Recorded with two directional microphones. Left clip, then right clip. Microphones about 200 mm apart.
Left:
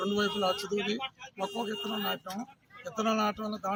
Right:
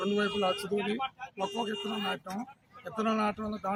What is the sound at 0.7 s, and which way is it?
Speech, 35° right (ahead or behind).